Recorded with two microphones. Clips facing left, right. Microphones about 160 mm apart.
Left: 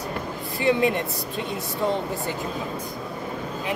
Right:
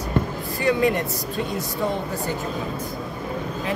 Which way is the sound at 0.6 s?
20° left (ahead or behind).